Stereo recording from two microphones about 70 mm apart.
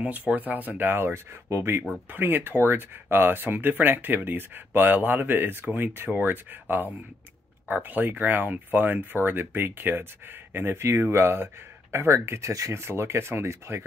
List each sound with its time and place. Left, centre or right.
0.0 s speech: centre; by 13.8 s right